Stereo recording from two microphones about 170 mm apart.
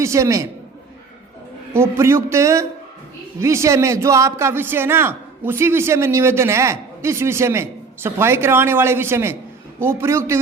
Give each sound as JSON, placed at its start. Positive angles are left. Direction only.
{"t": 0.0, "sound": "a man's voice", "side_deg": -15}
{"t": 1.7, "sound": "a man's voice", "side_deg": -15}